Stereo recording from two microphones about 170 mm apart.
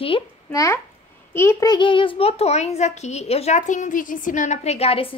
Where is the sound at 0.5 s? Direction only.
20° left (ahead or behind).